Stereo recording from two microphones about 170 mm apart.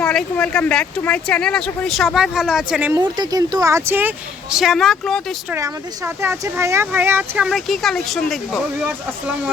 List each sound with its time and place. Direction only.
0.0 s speech: 5° left (ahead or behind)
2.9 s speech: 25° right (ahead or behind)
4.5 s speech: centre (ahead or behind)
5.5 s speech: 20° right (ahead or behind); by 8.6 s centre (ahead or behind)
8.9 s speech: 10° right (ahead or behind)